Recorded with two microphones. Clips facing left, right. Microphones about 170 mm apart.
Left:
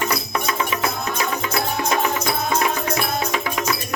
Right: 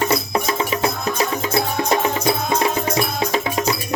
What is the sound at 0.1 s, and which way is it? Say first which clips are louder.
Music: right 4 dB; 30° right (ahead or behind).